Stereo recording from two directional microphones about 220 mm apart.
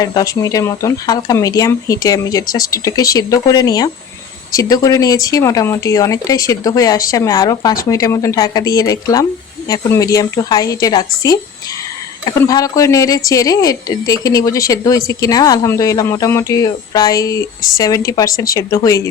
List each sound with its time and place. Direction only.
0.0 s speech: 15° left (ahead or behind)